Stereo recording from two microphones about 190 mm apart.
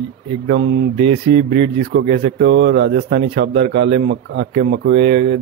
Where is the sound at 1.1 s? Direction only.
70° right (ahead or behind).